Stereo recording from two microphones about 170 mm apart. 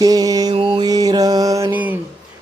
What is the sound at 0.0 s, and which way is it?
Mantra, 20° right (ahead or behind).